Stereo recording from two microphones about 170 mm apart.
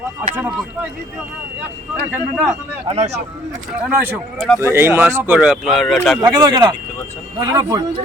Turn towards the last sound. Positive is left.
turn(degrees=-20)  # may be behind; listen again after turning